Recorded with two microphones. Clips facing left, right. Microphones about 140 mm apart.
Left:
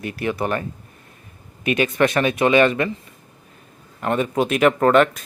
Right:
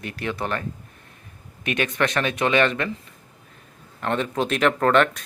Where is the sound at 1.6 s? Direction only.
5° left (ahead or behind).